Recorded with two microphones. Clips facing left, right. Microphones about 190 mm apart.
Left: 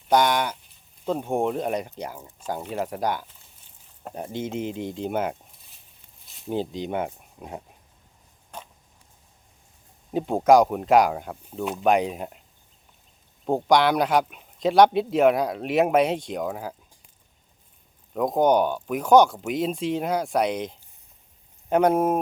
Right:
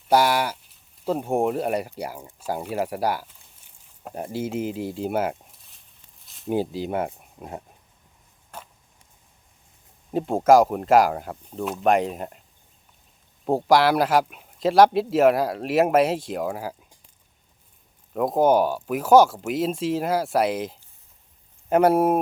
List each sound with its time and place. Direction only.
0.1 s a man's voice: 5° right (ahead or behind)
6.2 s a sound: centre (ahead or behind)
6.5 s a man's voice: 5° right (ahead or behind)
8.5 s a sound: 5° right (ahead or behind)
10.1 s a man's voice: centre (ahead or behind)
13.4 s a man's voice: 5° right (ahead or behind)
18.1 s a man's voice: 5° right (ahead or behind)